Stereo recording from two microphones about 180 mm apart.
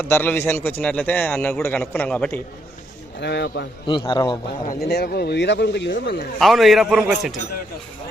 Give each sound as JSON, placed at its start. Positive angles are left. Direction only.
{"t": 0.0, "sound": "a man's voice", "side_deg": 10}
{"t": 3.2, "sound": "speech", "side_deg": 70}
{"t": 3.8, "sound": "a man's voice", "side_deg": 25}
{"t": 4.6, "sound": "speech", "side_deg": 55}
{"t": 6.4, "sound": "a man's voice", "side_deg": 0}